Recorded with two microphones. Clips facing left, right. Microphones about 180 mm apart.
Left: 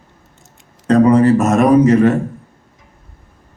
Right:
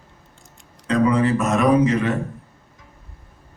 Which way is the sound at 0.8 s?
45° left (ahead or behind).